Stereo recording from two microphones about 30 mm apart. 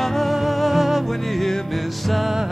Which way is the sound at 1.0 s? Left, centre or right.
Centre.